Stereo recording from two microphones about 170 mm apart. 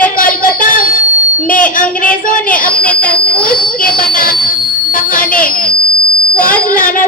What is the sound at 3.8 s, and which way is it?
A woman's voice, 60° left (ahead or behind).